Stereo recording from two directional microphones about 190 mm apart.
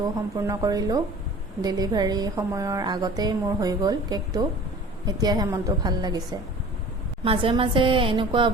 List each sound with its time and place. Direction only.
0.3 s a woman's voice: 20° right (ahead or behind)
7.3 s a woman's voice: 25° right (ahead or behind)